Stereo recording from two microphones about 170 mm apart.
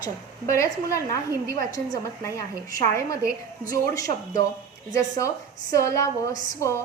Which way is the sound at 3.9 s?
20° left (ahead or behind).